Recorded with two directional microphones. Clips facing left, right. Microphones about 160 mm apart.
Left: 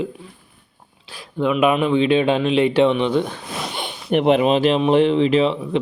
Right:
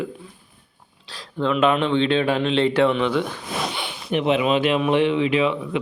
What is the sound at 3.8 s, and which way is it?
Speech, 50° left (ahead or behind).